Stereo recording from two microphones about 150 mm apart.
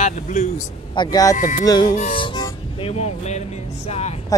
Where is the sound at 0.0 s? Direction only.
55° left (ahead or behind).